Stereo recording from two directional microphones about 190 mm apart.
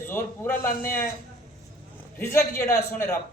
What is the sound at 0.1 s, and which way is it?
Speech, 10° left (ahead or behind).